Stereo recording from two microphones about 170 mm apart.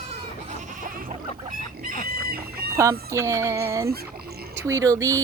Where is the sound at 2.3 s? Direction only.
65° right (ahead or behind).